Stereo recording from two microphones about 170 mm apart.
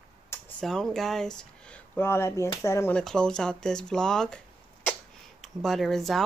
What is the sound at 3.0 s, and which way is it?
Speech, 5° left (ahead or behind).